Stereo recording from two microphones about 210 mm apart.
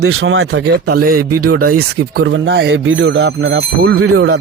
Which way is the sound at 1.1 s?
90° right.